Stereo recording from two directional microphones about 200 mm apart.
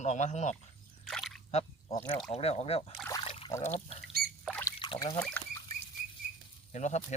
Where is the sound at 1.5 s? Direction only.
30° left (ahead or behind).